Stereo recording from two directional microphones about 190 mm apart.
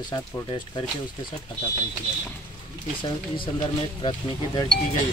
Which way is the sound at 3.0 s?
25° left (ahead or behind).